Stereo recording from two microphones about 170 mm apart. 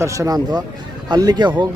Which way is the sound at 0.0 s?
20° right (ahead or behind).